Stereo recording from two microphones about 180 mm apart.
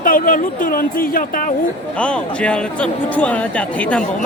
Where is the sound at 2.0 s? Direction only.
5° left (ahead or behind).